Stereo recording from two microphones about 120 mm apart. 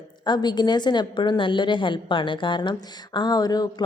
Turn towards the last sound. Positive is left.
turn(degrees=35)  # may be behind; listen again after turning